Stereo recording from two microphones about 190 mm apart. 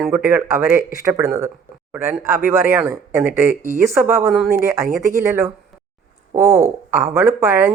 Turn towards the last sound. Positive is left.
turn(degrees=-15)  # may be behind; listen again after turning